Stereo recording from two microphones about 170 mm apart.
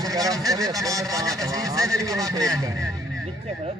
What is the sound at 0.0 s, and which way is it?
Speech, 20° right (ahead or behind).